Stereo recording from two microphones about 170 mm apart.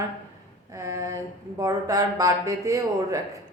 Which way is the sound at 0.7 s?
20° right (ahead or behind).